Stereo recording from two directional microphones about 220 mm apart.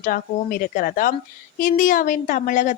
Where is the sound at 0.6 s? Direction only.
40° left (ahead or behind).